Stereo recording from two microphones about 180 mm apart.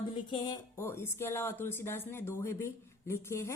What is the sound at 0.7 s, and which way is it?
Speech, 15° left (ahead or behind).